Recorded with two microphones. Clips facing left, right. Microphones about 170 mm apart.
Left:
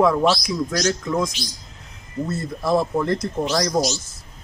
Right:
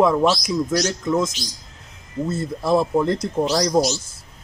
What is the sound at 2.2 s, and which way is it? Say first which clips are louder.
Speech: right 2 dB; 25° right (ahead or behind).